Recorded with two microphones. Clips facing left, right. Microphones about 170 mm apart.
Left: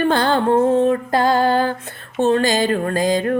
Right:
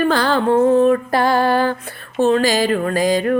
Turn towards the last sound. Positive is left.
turn(degrees=25)  # may be behind; listen again after turning